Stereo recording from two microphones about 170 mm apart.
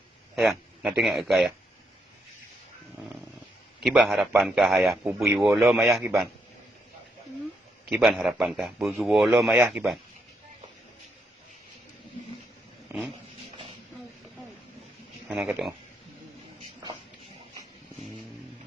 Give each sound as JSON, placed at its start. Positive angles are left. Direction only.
{"t": 0.3, "sound": "a man's voice", "side_deg": 0}
{"t": 3.8, "sound": "a man's voice", "side_deg": 0}
{"t": 5.2, "sound": "speech", "side_deg": -15}
{"t": 5.5, "sound": "a man's voice", "side_deg": 0}
{"t": 7.9, "sound": "a man's voice", "side_deg": 0}
{"t": 12.9, "sound": "a sound", "side_deg": -15}
{"t": 15.3, "sound": "a man's voice", "side_deg": -5}